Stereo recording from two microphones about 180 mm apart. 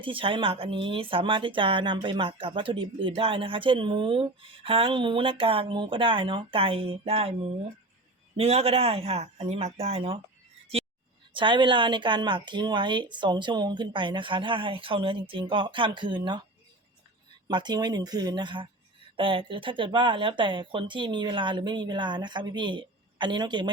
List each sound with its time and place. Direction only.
0.0 s a woman's voice: 30° right (ahead or behind)
11.3 s a woman's voice: 25° right (ahead or behind)
17.5 s a woman's voice: 25° right (ahead or behind)